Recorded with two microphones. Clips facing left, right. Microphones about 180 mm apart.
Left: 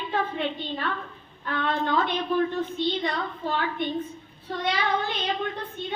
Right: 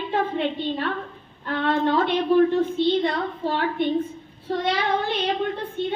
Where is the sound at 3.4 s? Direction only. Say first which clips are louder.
Right 3 dB; 30° right (ahead or behind).